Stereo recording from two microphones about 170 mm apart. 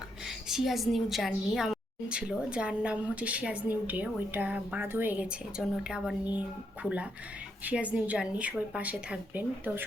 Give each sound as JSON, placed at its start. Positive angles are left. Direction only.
{"t": 0.3, "sound": "a woman's voice", "side_deg": 0}